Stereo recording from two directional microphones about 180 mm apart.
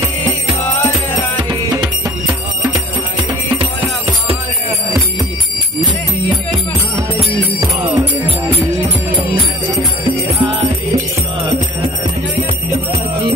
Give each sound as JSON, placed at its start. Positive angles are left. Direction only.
{"t": 7.6, "sound": "music", "side_deg": -15}
{"t": 10.4, "sound": "music", "side_deg": -30}